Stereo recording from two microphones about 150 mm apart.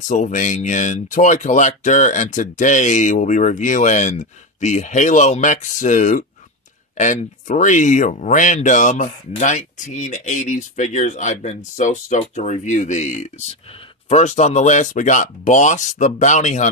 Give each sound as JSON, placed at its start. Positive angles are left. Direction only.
{"t": 0.1, "sound": "speech", "side_deg": 55}